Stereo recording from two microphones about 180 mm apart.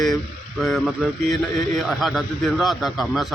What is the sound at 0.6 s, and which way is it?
A man's voice, centre (ahead or behind).